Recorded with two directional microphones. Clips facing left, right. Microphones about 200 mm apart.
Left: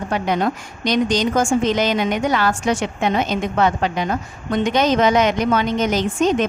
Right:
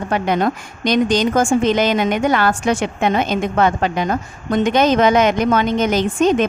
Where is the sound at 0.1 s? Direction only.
55° right (ahead or behind).